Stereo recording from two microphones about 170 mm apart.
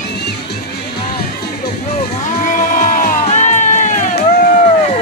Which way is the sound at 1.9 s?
45° left (ahead or behind).